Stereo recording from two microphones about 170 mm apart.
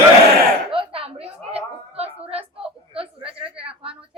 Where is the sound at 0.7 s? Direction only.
30° right (ahead or behind).